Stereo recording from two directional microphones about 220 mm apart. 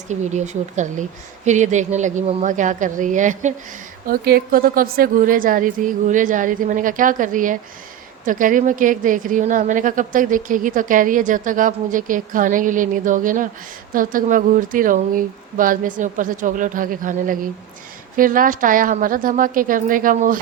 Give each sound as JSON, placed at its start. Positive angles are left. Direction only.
{"t": 0.1, "sound": "a woman's voice", "side_deg": -30}